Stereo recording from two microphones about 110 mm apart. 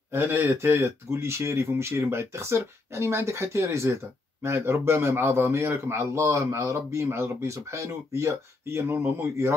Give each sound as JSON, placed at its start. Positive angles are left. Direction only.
{"t": 0.1, "sound": "speech", "side_deg": -20}